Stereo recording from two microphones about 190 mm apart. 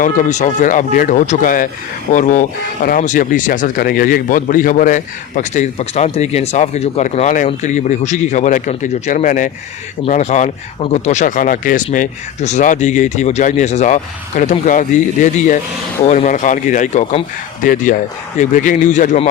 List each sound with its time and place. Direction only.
0.0 s speech: 40° left (ahead or behind)